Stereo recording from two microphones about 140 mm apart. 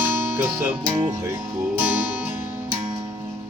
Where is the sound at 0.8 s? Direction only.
35° right (ahead or behind).